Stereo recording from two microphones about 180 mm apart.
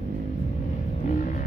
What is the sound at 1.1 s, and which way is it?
Music, 45° left (ahead or behind).